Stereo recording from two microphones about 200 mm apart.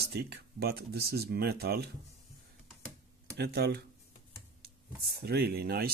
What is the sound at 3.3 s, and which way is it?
Speech, 55° right (ahead or behind).